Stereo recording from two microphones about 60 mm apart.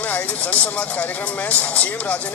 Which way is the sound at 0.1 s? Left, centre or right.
Left.